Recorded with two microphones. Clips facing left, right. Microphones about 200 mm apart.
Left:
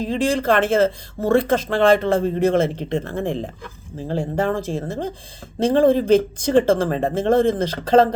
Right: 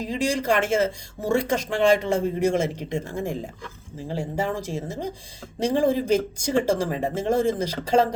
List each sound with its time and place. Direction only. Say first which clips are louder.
0.0 s speech: left 5 dB; 15° right (ahead or behind)
4.1 s speech: left 5 dB; 55° left (ahead or behind)
5.5 s speech: left 6 dB; 15° right (ahead or behind)